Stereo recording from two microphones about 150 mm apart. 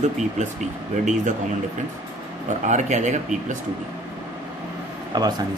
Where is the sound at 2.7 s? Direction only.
50° right (ahead or behind).